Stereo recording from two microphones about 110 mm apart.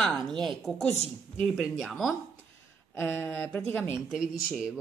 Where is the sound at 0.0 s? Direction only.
Centre (ahead or behind).